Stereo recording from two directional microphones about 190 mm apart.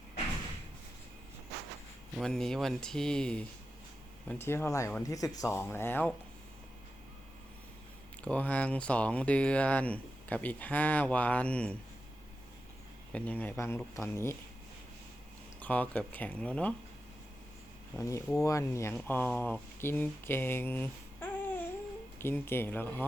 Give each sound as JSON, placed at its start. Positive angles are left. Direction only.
{"t": 2.1, "sound": "speech", "side_deg": 0}
{"t": 8.2, "sound": "speech", "side_deg": 5}
{"t": 13.1, "sound": "speech", "side_deg": 5}
{"t": 15.6, "sound": "speech", "side_deg": 10}
{"t": 17.9, "sound": "speech", "side_deg": 15}